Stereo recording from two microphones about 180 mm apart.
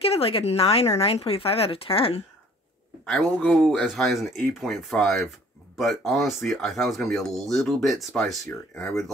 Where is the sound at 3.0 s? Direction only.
Centre (ahead or behind).